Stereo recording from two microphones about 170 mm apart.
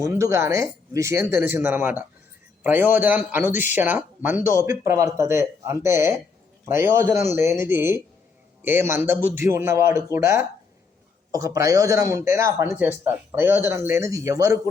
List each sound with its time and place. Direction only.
0.0 s speech: 15° right (ahead or behind)
4.4 s a man's voice: 50° left (ahead or behind)
4.6 s speech: 15° right (ahead or behind)